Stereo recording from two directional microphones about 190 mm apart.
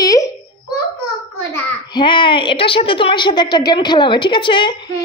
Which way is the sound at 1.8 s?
25° left (ahead or behind).